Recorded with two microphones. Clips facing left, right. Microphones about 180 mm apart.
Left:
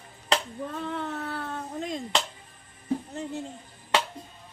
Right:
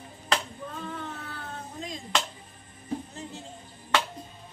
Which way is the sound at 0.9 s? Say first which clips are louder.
Left 5 dB; 65° left (ahead or behind).